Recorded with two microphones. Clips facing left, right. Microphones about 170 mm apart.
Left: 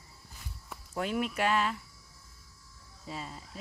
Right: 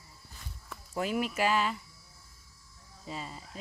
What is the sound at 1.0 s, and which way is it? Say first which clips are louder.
Speech: right 1 dB; 5° right (ahead or behind).